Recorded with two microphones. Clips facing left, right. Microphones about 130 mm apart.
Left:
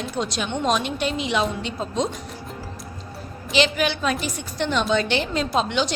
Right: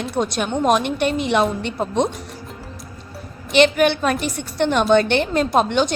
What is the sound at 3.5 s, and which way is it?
A woman's voice, 55° right (ahead or behind).